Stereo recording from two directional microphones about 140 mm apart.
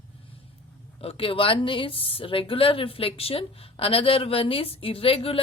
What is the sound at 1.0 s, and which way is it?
A woman's voice, 40° left (ahead or behind).